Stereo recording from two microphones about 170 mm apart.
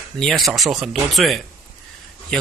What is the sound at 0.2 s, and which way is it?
Speech, centre (ahead or behind).